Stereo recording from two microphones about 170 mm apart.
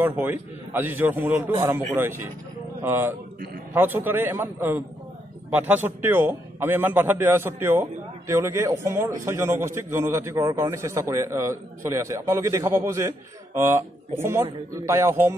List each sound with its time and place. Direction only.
0.0 s a man's voice: 10° right (ahead or behind)